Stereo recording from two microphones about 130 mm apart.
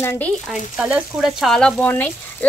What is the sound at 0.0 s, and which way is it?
Speech, 20° left (ahead or behind).